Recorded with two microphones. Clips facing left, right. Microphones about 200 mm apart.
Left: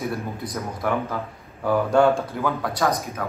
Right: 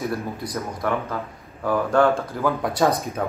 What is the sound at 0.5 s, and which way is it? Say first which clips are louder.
Speech: even; centre (ahead or behind).